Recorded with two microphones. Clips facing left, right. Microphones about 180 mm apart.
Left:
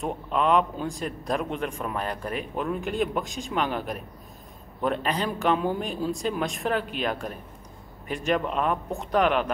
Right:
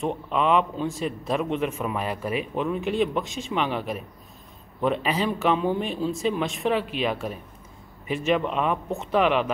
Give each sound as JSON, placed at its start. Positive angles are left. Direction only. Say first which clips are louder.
{"t": 0.0, "sound": "a man's voice", "louder": "right 1 dB", "side_deg": 0}